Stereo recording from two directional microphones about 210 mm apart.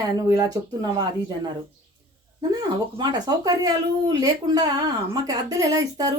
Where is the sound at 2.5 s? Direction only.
20° right (ahead or behind).